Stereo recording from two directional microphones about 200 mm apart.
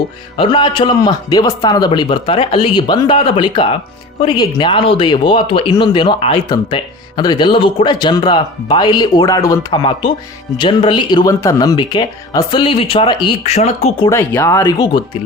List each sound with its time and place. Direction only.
0.3 s speech: 25° left (ahead or behind)
14.1 s speech: 15° left (ahead or behind)